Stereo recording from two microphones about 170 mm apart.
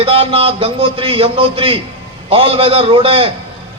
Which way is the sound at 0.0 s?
35° right (ahead or behind).